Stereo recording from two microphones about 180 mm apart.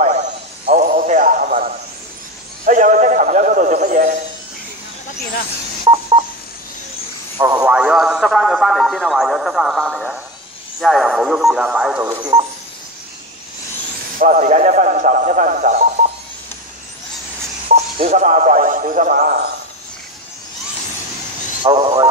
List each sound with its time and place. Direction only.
0.0 s a sound: 40° right (ahead or behind)
5.9 s telephone dialing: 20° right (ahead or behind)
7.3 s radio: 20° right (ahead or behind)
7.6 s radio: 5° right (ahead or behind)
10.8 s a sound: centre (ahead or behind)
12.2 s telephone dialing: 25° right (ahead or behind)
14.1 s a man's voice: 45° right (ahead or behind)
18.0 s a man's voice: 45° right (ahead or behind)
21.6 s speech: 25° right (ahead or behind)